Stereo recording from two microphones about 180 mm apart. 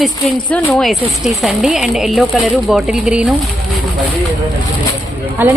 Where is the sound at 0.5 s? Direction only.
Centre (ahead or behind).